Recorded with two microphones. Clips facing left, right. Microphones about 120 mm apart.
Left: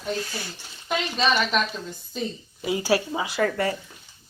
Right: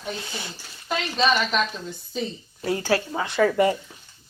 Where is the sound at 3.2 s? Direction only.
Centre (ahead or behind).